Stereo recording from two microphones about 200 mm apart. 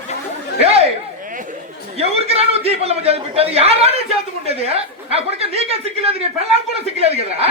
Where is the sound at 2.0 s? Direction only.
30° right (ahead or behind).